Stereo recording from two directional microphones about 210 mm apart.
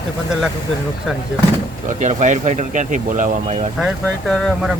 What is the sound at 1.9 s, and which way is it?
Speech, 35° right (ahead or behind).